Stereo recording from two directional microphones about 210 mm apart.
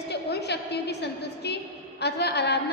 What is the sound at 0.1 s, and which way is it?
A woman's voice, 50° left (ahead or behind).